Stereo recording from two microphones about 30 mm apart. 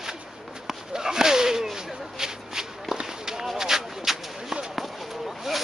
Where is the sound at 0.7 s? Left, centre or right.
Centre.